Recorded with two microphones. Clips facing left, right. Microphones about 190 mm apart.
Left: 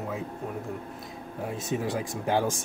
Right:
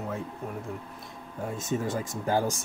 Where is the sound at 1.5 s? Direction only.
Centre (ahead or behind).